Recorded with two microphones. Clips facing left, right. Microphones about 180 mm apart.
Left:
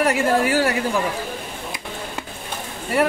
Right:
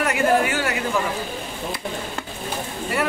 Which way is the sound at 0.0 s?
35° left (ahead or behind).